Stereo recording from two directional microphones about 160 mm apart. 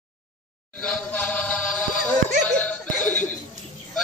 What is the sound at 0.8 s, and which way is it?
Chant, 10° left (ahead or behind).